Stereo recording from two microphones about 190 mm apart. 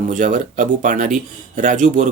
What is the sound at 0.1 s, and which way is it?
Speech, 45° right (ahead or behind).